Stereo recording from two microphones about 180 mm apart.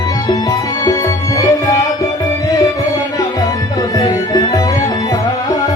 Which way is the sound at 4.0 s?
20° left (ahead or behind).